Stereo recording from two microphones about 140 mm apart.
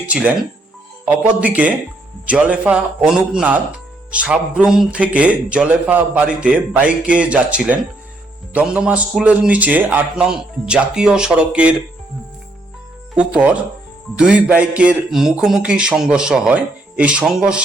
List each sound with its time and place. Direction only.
0.0 s speech: 10° right (ahead or behind)
13.1 s speech: 10° right (ahead or behind)